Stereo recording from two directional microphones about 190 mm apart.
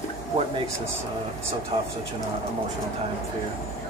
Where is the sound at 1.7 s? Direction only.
30° right (ahead or behind).